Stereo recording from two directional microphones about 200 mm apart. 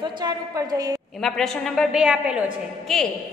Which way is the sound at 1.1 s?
Centre (ahead or behind).